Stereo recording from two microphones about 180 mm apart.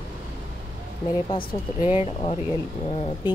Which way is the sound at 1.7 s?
10° right (ahead or behind).